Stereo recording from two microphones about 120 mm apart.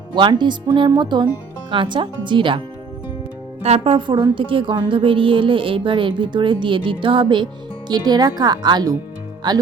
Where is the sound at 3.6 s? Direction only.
65° right (ahead or behind).